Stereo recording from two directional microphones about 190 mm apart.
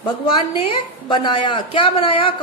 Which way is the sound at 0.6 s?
25° left (ahead or behind).